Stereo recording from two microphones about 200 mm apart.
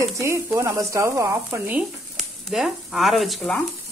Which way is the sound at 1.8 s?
Centre (ahead or behind).